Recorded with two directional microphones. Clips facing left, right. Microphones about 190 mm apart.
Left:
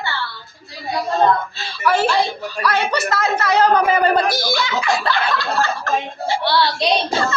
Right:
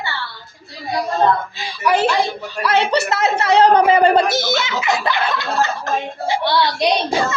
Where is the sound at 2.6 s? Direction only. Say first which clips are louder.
Right 3 dB; 25° right (ahead or behind).